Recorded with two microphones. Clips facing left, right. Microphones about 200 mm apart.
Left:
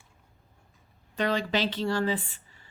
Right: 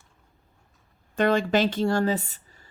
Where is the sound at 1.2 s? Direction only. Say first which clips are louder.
Right 6 dB; 50° right (ahead or behind).